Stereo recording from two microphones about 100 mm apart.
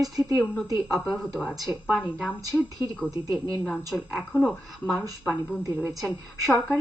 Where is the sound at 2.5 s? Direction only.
10° left (ahead or behind).